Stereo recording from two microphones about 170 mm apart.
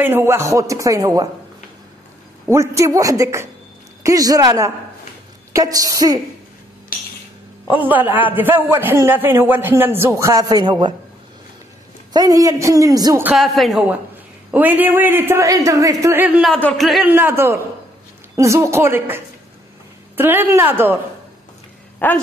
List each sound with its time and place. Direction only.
0.0 s speech: 15° right (ahead or behind)
2.4 s a man's voice: 15° right (ahead or behind)
7.6 s a man's voice: 10° right (ahead or behind); by 11.0 s 25° right (ahead or behind)
12.1 s speech: 20° right (ahead or behind)
13.2 s a man's voice: centre (ahead or behind)
16.5 s speech: 5° left (ahead or behind)
17.1 s a man's voice: 10° right (ahead or behind)
22.0 s speech: 10° left (ahead or behind)